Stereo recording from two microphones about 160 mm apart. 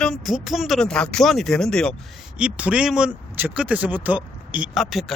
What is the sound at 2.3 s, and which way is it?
Speech, 5° right (ahead or behind).